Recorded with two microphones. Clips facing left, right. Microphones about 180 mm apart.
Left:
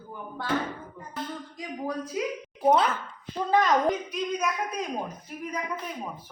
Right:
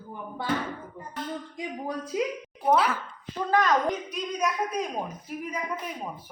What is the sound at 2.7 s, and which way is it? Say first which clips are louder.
Speech: right 3 dB; 5° right (ahead or behind).